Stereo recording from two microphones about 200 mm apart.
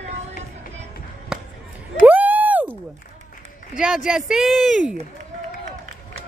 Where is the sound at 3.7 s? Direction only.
Centre (ahead or behind).